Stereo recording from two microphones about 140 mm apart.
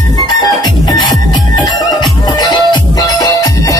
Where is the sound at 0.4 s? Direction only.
30° left (ahead or behind).